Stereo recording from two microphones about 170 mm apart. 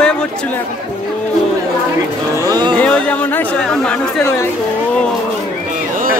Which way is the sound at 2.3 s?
20° right (ahead or behind).